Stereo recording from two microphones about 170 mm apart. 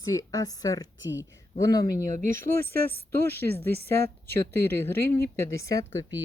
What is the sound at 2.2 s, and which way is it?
Speech, 50° right (ahead or behind).